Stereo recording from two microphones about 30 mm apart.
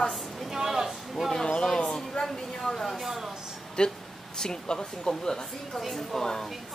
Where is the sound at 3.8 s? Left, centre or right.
Left.